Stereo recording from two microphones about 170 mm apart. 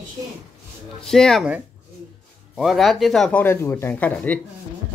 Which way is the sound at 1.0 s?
5° left (ahead or behind).